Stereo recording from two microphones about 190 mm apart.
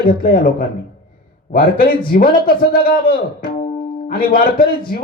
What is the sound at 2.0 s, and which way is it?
Speech, 50° left (ahead or behind).